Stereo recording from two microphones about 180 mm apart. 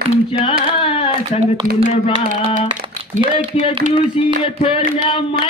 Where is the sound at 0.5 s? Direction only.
30° left (ahead or behind).